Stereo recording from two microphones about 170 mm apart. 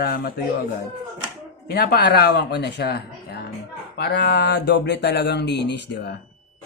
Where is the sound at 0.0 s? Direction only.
65° left (ahead or behind).